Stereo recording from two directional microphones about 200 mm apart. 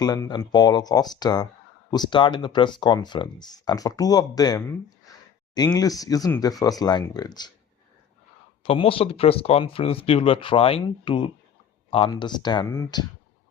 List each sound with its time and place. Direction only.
0.0 s speech: 20° left (ahead or behind)
8.6 s speech: 30° left (ahead or behind)